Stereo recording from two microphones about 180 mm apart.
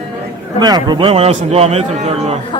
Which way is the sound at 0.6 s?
25° right (ahead or behind).